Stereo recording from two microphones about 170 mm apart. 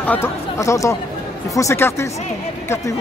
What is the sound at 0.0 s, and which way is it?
Speech, 10° left (ahead or behind).